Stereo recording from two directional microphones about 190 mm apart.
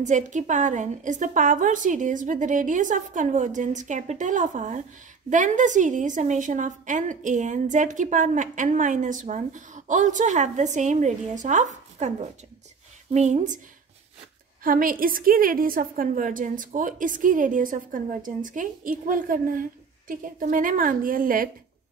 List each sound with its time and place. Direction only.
0.0 s a woman's voice: 40° right (ahead or behind)
14.6 s a woman's voice: 45° right (ahead or behind)